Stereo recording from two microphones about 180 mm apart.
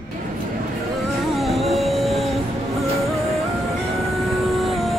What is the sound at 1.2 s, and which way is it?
Music, centre (ahead or behind).